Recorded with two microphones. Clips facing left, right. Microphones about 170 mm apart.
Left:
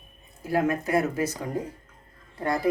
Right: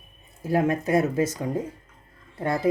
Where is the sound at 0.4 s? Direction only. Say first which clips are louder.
Right 2 dB; 25° right (ahead or behind).